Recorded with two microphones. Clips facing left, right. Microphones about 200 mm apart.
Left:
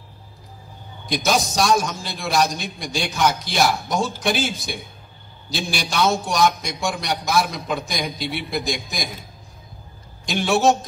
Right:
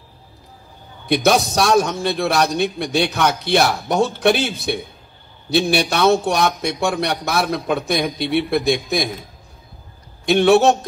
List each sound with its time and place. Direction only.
1.0 s a man's voice: 60° right (ahead or behind)
10.2 s a man's voice: 60° right (ahead or behind)